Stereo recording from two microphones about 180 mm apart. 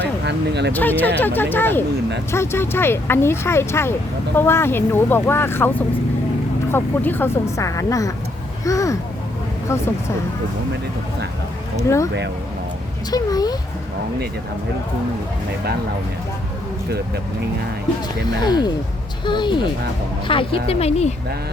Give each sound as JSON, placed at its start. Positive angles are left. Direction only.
{"t": 0.3, "sound": "speech", "side_deg": -70}
{"t": 0.7, "sound": "speech", "side_deg": 10}
{"t": 11.8, "sound": "speech", "side_deg": 15}
{"t": 13.1, "sound": "speech", "side_deg": 20}
{"t": 18.4, "sound": "speech", "side_deg": 20}